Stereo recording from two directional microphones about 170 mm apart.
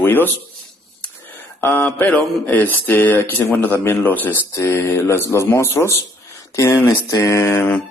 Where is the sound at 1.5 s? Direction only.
10° left (ahead or behind).